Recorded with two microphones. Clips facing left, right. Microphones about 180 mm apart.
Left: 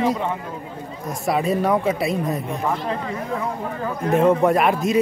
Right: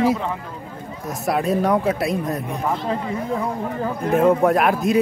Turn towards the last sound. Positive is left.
turn(degrees=0)  # may be behind; listen again after turning